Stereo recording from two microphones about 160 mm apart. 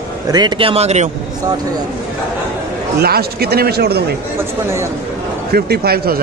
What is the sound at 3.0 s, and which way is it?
Speech, 75° right (ahead or behind).